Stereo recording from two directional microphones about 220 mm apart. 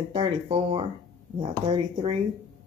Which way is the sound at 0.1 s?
30° right (ahead or behind).